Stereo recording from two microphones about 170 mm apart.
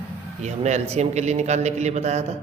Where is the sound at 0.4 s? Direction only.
40° right (ahead or behind).